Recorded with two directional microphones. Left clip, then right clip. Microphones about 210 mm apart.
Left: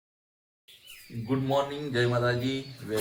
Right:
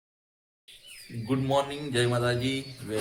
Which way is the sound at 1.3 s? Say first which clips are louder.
Right 1 dB; 5° right (ahead or behind).